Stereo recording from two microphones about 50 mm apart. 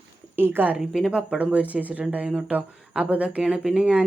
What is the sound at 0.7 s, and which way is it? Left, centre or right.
Speech, centre.